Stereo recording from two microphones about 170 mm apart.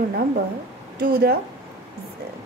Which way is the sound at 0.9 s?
60° right (ahead or behind).